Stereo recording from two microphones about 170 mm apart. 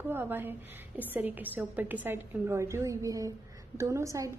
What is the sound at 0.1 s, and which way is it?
A woman's voice, 10° right (ahead or behind).